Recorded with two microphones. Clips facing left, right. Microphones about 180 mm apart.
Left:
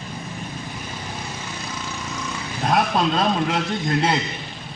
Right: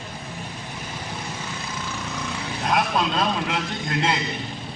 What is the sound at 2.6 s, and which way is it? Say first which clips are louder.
A man's voice: left 3 dB; 35° left (ahead or behind).